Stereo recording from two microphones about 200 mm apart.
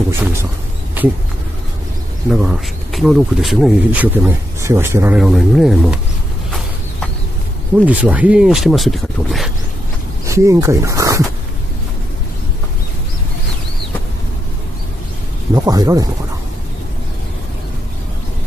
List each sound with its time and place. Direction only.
1.0 s insect: 10° right (ahead or behind)
2.2 s speech: 5° right (ahead or behind)
7.8 s speech: 5° right (ahead or behind)
10.2 s speech: 15° right (ahead or behind)
15.5 s speech: 20° right (ahead or behind)